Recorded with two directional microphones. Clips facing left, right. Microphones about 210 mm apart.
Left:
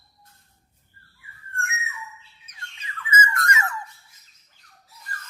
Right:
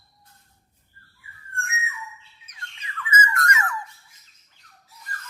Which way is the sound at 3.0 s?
25° left (ahead or behind).